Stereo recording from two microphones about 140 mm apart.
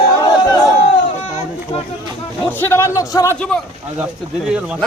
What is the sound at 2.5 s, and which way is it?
Speech, 15° left (ahead or behind).